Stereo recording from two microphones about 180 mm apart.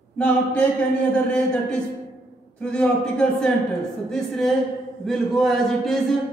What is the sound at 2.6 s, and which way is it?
Speech, 5° left (ahead or behind).